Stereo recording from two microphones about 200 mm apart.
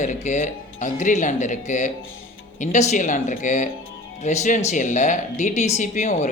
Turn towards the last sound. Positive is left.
turn(degrees=35)  # may be behind; listen again after turning